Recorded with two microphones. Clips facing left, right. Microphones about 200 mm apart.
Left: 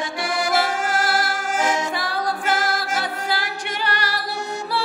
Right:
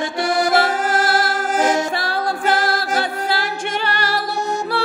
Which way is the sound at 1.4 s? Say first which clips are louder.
Right 5 dB; 40° right (ahead or behind).